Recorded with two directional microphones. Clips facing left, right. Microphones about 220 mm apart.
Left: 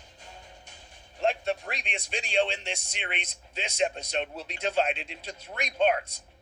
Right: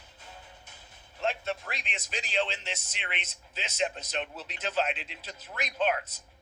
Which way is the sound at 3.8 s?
35° left (ahead or behind).